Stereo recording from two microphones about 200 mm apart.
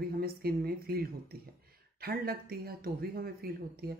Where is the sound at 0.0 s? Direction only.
50° right (ahead or behind).